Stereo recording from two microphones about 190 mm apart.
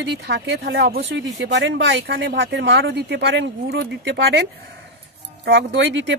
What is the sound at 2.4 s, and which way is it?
Speech, 65° right (ahead or behind).